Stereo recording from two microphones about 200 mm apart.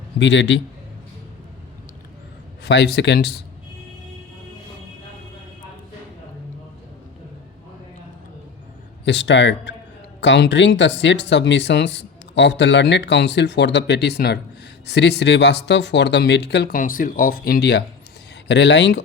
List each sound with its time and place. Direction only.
0.2 s speech: 65° left (ahead or behind)
2.6 s speech: 55° left (ahead or behind)
9.0 s speech: 65° left (ahead or behind)